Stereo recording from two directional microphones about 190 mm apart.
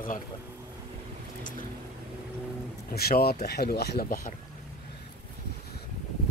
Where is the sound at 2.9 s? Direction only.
55° left (ahead or behind).